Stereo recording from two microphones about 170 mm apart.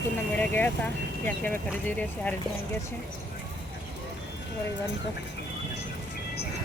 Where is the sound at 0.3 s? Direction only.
10° left (ahead or behind).